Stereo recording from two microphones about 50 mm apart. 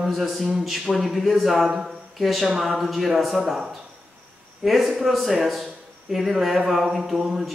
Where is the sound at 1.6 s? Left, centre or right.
Centre.